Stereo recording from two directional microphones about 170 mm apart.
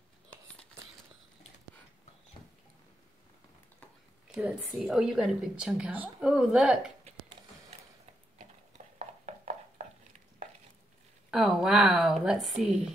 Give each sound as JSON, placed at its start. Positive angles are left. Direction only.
{"t": 4.4, "sound": "a woman's voice", "side_deg": -5}
{"t": 8.9, "sound": "a sound", "side_deg": -45}
{"t": 11.2, "sound": "a woman's voice", "side_deg": -5}